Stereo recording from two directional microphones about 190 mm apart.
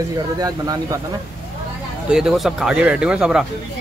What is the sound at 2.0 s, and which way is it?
Speech, 5° right (ahead or behind).